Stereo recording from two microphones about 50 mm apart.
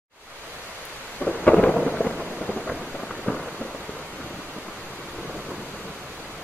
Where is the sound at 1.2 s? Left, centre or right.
Left.